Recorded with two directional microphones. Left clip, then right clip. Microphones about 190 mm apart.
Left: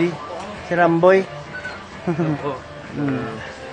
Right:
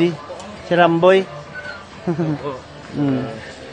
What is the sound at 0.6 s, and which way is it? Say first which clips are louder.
Speech: right 2 dB; 35° right (ahead or behind).